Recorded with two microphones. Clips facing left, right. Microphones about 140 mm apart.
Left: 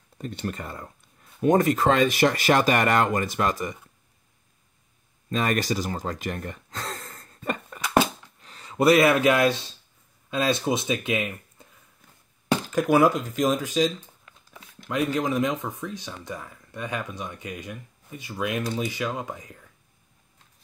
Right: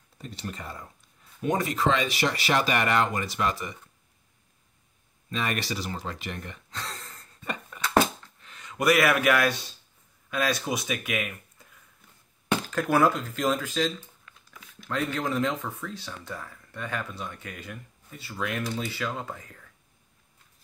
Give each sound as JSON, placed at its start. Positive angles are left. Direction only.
{"t": 0.2, "sound": "speech", "side_deg": 55}
{"t": 5.3, "sound": "speech", "side_deg": 45}
{"t": 7.8, "sound": "a sound", "side_deg": 15}
{"t": 8.4, "sound": "speech", "side_deg": 35}
{"t": 12.6, "sound": "speech", "side_deg": 15}
{"t": 14.2, "sound": "a sound", "side_deg": 25}
{"t": 15.1, "sound": "speech", "side_deg": 15}